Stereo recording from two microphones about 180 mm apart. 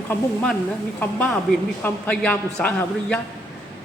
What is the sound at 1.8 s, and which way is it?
Speech, 10° left (ahead or behind).